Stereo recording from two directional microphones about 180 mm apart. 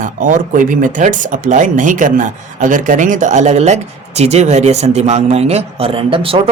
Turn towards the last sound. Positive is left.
turn(degrees=-30)  # may be behind; listen again after turning